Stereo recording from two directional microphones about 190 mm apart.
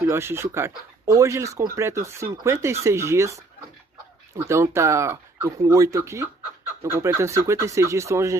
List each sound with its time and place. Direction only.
0.0 s speech: 15° right (ahead or behind)
4.5 s speech: 15° right (ahead or behind)